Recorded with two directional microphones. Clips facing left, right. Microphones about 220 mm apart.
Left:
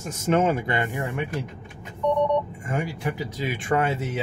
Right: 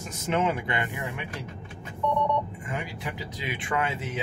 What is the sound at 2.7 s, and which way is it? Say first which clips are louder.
Speech: left 8 dB; 45° left (ahead or behind).